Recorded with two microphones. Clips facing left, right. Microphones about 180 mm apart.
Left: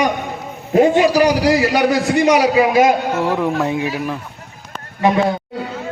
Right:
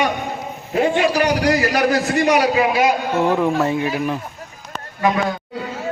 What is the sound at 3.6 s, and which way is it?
Speech, 10° left (ahead or behind).